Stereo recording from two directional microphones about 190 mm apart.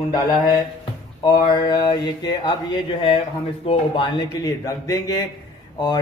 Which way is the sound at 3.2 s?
30° left (ahead or behind).